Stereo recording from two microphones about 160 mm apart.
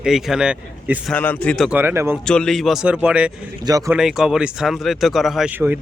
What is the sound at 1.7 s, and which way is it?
Speech, 15° right (ahead or behind).